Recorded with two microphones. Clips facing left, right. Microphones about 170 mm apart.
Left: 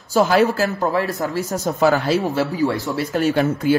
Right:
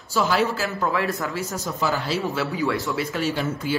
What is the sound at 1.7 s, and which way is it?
Speech, 60° left (ahead or behind).